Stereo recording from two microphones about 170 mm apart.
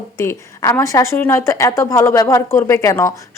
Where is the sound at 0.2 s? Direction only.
15° left (ahead or behind).